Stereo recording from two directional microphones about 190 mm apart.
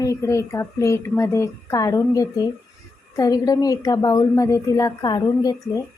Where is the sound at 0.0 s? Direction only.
15° left (ahead or behind).